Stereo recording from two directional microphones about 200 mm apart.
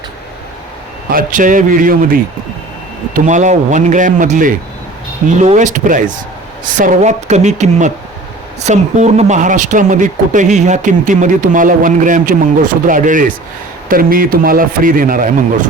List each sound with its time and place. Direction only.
1.1 s speech: 40° right (ahead or behind)
3.2 s a man's voice: 35° right (ahead or behind)